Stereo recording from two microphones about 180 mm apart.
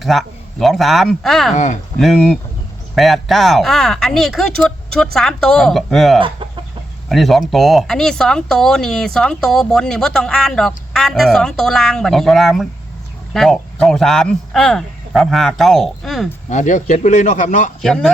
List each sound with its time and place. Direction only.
0.0 s speech: centre (ahead or behind)
1.5 s speech: 45° left (ahead or behind)
2.0 s speech: centre (ahead or behind)
6.1 s speech: 30° right (ahead or behind)
7.1 s speech: centre (ahead or behind)
16.5 s speech: 40° left (ahead or behind)
17.8 s speech: 5° left (ahead or behind)